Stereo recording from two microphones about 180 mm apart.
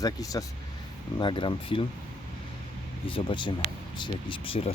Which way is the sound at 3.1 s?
30° left (ahead or behind).